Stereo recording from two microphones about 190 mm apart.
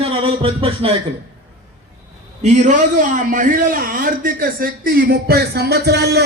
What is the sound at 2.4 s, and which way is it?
A man's voice, 40° right (ahead or behind).